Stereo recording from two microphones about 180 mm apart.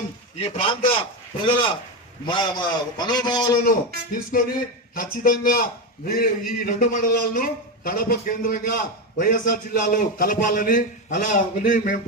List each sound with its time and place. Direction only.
0.3 s a man's voice: 30° left (ahead or behind)
3.6 s a man's voice: 55° left (ahead or behind)